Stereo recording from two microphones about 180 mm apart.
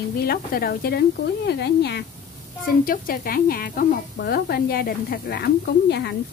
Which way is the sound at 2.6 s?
55° left (ahead or behind).